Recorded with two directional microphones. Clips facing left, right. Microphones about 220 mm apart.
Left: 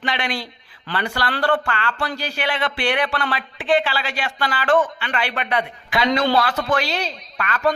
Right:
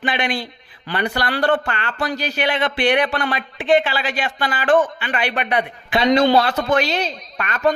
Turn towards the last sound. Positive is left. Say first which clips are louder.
# right 2 dB
turn(degrees=-20)  # may be behind; listen again after turning